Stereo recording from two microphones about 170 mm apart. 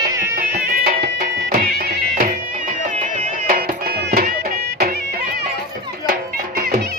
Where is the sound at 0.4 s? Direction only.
60° right (ahead or behind).